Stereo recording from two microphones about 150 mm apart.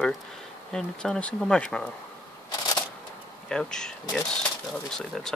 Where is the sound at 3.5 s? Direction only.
5° left (ahead or behind).